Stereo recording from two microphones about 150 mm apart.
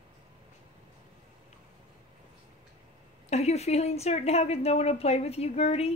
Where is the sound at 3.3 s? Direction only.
45° left (ahead or behind).